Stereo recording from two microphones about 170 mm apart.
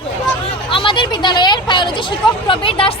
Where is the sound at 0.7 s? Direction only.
30° left (ahead or behind).